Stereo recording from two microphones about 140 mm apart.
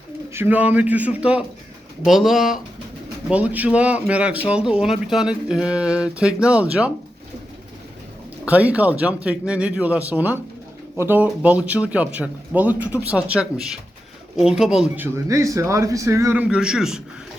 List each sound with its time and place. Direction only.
0.3 s speech: 15° right (ahead or behind)
8.4 s speech: 10° right (ahead or behind)
15.0 s a man's voice: 20° right (ahead or behind); by 17.0 s 5° right (ahead or behind)